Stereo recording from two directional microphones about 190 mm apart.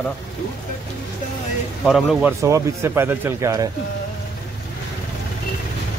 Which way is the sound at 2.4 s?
15° right (ahead or behind).